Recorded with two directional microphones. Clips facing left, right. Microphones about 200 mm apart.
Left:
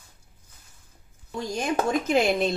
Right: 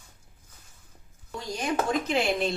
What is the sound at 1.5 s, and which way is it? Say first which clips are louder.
Speech: left 2 dB; 45° left (ahead or behind).